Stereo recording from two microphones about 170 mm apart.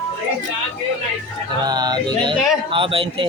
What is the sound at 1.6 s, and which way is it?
Speech, 25° right (ahead or behind).